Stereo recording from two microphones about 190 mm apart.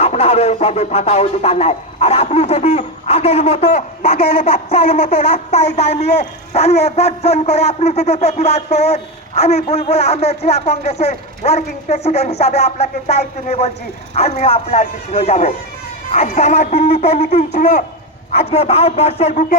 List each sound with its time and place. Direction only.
0.0 s a man's voice: 35° left (ahead or behind)
14.2 s a man's voice: 35° left (ahead or behind)